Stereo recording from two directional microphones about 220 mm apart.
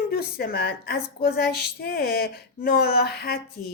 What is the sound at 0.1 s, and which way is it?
A woman's voice, 45° left (ahead or behind).